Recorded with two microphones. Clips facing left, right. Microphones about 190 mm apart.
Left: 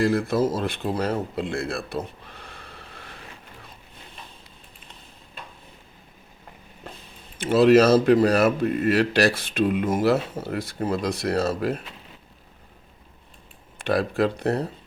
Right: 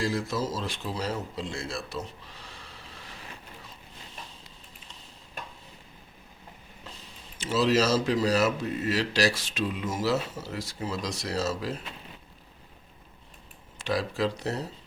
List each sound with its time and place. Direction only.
0.0 s speech: 55° left (ahead or behind)
6.8 s speech: 55° left (ahead or behind)
13.7 s speech: 55° left (ahead or behind)